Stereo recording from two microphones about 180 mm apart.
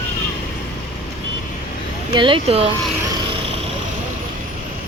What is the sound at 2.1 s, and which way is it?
Speech, 30° right (ahead or behind).